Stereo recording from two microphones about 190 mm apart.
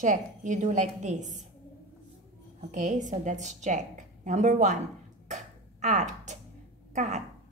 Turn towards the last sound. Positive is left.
turn(degrees=-35)  # may be behind; listen again after turning